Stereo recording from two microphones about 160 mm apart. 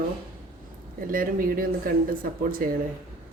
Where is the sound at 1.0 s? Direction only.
60° right (ahead or behind).